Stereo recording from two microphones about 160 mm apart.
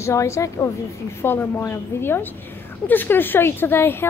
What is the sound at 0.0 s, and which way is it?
A woman's voice, 20° left (ahead or behind).